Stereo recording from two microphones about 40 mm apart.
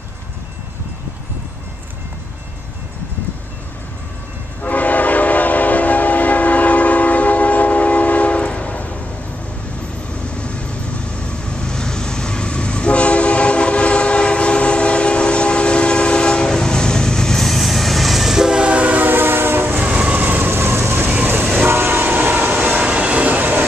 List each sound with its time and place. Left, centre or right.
4.6 s train: left
10.3 s vehicle: left; by 18.6 s centre
18.6 s train: right
18.9 s train: right
19.9 s train: right
20.2 s vehicle: right
20.5 s vehicle: right
21.6 s train: right